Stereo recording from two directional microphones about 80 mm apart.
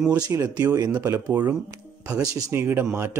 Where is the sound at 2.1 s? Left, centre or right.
Right.